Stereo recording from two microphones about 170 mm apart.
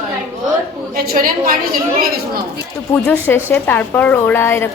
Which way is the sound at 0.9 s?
60° right (ahead or behind).